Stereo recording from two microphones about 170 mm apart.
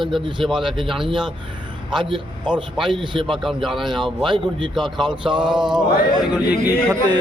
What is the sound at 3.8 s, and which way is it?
A man's voice, 25° right (ahead or behind).